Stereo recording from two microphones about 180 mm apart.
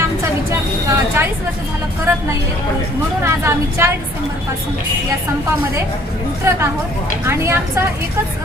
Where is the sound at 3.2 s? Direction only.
15° right (ahead or behind).